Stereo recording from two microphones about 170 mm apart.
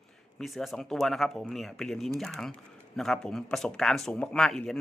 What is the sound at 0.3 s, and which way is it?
Speech, centre (ahead or behind).